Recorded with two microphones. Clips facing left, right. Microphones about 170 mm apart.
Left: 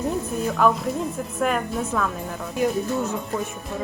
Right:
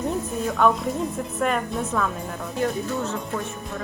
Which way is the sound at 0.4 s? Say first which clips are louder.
Even; centre (ahead or behind).